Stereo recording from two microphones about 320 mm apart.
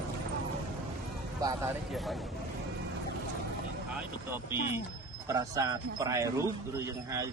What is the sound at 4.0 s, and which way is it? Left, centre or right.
A man's voice, centre.